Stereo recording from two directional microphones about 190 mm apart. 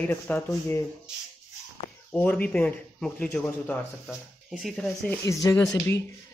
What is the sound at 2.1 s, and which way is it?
Speech, 10° left (ahead or behind).